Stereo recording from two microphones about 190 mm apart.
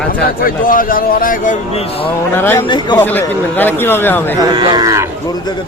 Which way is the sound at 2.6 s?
25° left (ahead or behind).